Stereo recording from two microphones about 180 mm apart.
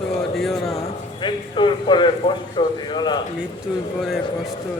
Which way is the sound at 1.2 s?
25° left (ahead or behind).